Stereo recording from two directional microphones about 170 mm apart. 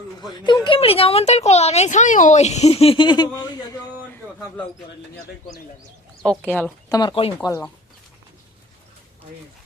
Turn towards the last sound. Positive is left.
turn(degrees=20)  # may be behind; listen again after turning